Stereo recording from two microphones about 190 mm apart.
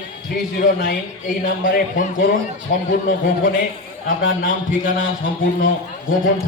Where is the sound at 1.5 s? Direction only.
45° left (ahead or behind).